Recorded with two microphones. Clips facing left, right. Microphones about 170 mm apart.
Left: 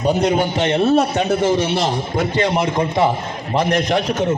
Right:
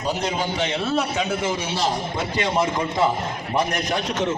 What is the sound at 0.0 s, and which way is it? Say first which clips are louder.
A man's voice: left 8 dB; 65° left (ahead or behind).